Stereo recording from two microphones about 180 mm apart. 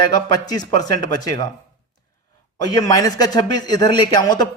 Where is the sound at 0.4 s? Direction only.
20° left (ahead or behind).